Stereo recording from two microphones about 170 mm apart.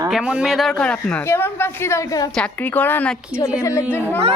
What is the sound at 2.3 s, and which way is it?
A woman's voice, 10° left (ahead or behind).